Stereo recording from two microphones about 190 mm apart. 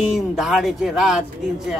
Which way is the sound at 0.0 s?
Centre (ahead or behind).